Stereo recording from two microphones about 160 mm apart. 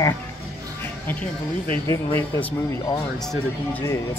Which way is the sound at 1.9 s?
15° left (ahead or behind).